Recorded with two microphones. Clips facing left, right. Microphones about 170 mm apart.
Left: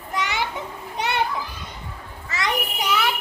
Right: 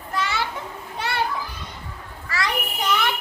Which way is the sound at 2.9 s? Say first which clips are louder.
Even; 10° left (ahead or behind).